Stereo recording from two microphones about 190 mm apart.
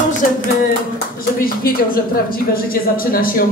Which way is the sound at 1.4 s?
50° left (ahead or behind).